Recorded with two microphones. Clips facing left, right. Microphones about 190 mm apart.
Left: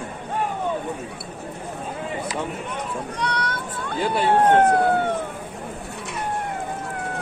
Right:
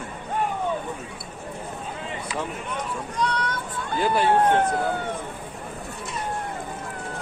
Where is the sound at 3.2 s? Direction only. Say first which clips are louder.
Right 2 dB; 70° left (ahead or behind).